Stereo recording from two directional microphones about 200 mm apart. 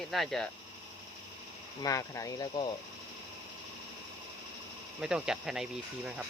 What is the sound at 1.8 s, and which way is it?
Speech, 15° left (ahead or behind).